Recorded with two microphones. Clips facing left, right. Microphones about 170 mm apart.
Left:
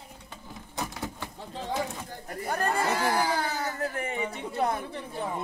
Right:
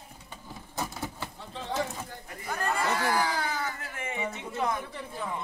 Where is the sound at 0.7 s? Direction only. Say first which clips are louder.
Even; centre (ahead or behind).